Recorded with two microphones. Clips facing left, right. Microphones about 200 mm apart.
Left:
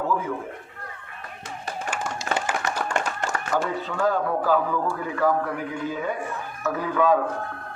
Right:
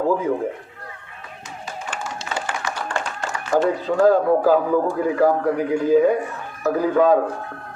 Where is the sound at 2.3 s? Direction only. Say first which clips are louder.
Left 2 dB; 50° left (ahead or behind).